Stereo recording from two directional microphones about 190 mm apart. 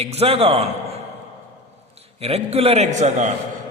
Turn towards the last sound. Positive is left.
turn(degrees=-35)  # may be behind; listen again after turning